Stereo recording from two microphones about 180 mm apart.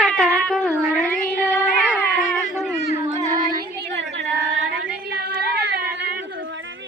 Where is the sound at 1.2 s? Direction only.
5° left (ahead or behind).